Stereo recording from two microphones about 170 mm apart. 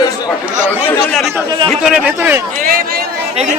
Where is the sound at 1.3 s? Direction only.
25° right (ahead or behind).